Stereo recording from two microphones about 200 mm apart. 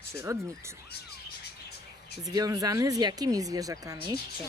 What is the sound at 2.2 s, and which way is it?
Speech, 20° right (ahead or behind).